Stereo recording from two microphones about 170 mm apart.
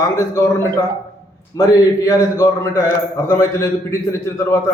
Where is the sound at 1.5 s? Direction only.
20° left (ahead or behind).